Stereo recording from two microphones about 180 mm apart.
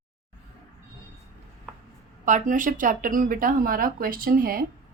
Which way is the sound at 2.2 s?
45° right (ahead or behind).